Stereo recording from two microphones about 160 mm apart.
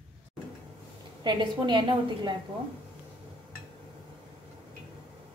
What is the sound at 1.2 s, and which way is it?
Speech, 30° right (ahead or behind).